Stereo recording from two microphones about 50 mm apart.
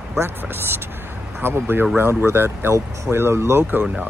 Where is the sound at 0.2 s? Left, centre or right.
Right.